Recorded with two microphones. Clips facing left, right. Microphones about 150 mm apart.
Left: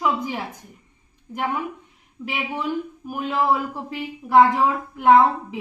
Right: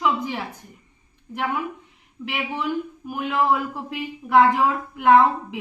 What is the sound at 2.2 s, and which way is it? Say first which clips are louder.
A woman's voice: even; 10° left (ahead or behind).